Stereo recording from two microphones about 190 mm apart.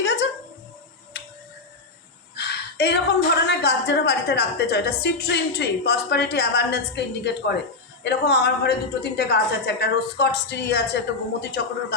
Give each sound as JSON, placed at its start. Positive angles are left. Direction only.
{"t": 0.0, "sound": "a sound", "side_deg": 75}
{"t": 2.3, "sound": "a woman's voice", "side_deg": 65}
{"t": 8.0, "sound": "a woman's voice", "side_deg": 60}